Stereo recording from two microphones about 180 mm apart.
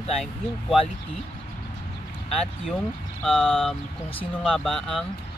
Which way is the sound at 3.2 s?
Centre (ahead or behind).